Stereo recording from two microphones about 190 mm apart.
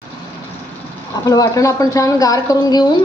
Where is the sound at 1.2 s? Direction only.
15° left (ahead or behind).